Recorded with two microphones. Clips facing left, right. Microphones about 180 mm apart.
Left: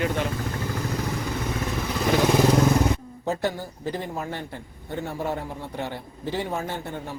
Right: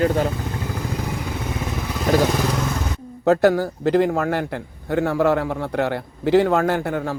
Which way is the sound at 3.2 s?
90° right.